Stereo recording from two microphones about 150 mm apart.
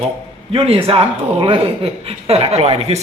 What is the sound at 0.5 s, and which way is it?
Speech, 40° right (ahead or behind).